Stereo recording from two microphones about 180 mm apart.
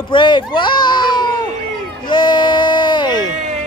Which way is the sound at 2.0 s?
25° left (ahead or behind).